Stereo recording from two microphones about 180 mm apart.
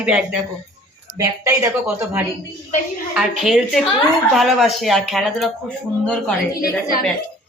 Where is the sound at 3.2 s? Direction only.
Centre (ahead or behind).